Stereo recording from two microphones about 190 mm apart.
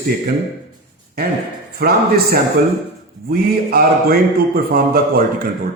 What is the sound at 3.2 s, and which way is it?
Speech, 50° right (ahead or behind).